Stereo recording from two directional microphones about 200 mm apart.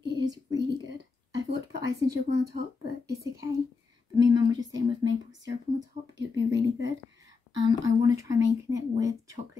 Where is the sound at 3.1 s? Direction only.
15° right (ahead or behind).